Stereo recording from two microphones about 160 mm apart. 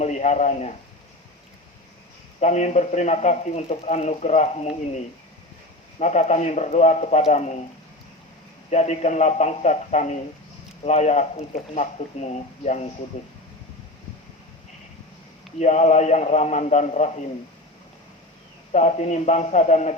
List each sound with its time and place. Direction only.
0.0 s speech: 45° left (ahead or behind)
2.4 s speech: 45° left (ahead or behind)
8.7 s speech: 45° left (ahead or behind)
15.5 s speech: 45° left (ahead or behind)
18.7 s speech: 45° left (ahead or behind)